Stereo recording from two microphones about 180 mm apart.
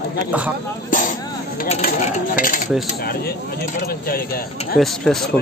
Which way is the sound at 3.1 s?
60° left (ahead or behind).